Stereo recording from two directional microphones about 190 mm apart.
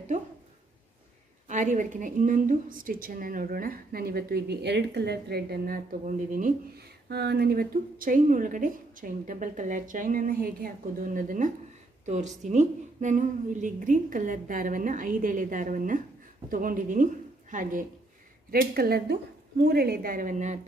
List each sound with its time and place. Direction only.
1.5 s a woman's voice: 40° right (ahead or behind)
7.1 s a woman's voice: 60° right (ahead or behind); by 20.6 s 40° right (ahead or behind)